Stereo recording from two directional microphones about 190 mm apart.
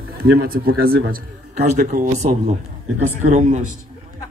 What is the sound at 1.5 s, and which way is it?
A man's voice, 40° right (ahead or behind).